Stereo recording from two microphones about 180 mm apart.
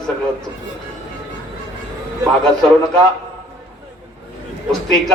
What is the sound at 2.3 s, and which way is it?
Speech, 5° left (ahead or behind).